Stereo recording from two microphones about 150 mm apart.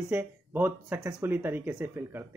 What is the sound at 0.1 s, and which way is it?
A man's voice, 15° right (ahead or behind).